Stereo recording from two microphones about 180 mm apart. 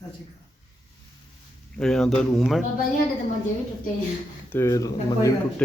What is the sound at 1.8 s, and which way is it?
Speech, 5° left (ahead or behind).